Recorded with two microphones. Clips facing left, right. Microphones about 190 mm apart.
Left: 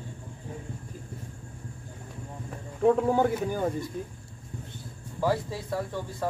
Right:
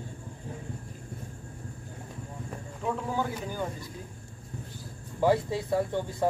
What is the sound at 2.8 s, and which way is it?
Speech, 55° left (ahead or behind).